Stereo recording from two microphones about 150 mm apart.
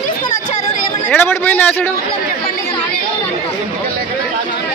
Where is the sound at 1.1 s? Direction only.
15° left (ahead or behind).